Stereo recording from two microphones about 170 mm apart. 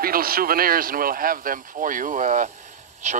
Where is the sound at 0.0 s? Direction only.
60° right (ahead or behind).